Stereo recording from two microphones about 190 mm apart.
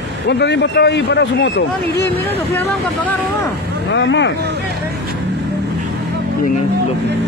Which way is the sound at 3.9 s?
70° left (ahead or behind).